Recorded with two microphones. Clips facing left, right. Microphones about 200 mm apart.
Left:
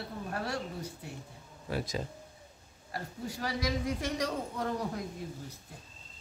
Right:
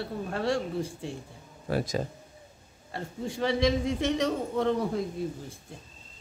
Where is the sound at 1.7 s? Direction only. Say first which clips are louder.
Right 6 dB; 50° right (ahead or behind).